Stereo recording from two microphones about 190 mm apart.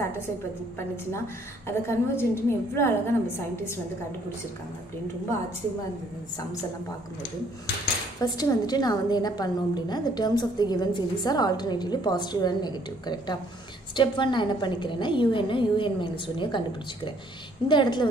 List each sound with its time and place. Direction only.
1.9 s a woman's voice: 15° left (ahead or behind)
8.2 s a woman's voice: 20° left (ahead or behind)